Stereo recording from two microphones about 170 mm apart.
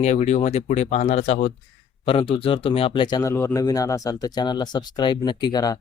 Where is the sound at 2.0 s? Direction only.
30° left (ahead or behind).